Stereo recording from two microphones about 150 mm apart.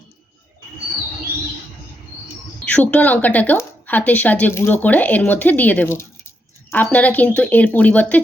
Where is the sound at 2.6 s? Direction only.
10° left (ahead or behind).